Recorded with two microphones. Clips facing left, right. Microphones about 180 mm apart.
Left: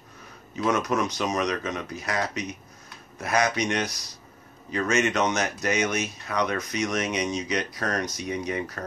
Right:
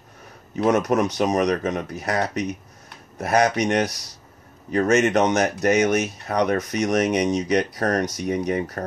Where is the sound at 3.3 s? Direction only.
45° right (ahead or behind).